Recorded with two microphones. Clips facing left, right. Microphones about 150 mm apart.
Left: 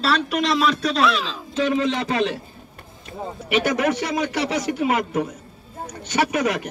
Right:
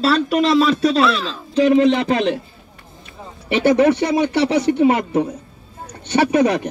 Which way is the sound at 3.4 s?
30° right (ahead or behind).